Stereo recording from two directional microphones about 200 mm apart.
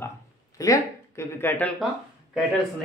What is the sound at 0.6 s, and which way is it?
Speech, 15° left (ahead or behind).